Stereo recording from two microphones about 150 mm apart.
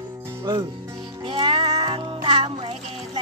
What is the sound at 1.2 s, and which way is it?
Music, 40° right (ahead or behind).